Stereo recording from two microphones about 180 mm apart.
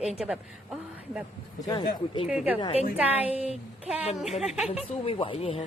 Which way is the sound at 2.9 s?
10° right (ahead or behind).